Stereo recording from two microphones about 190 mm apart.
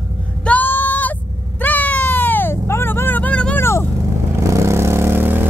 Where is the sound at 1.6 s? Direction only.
10° left (ahead or behind).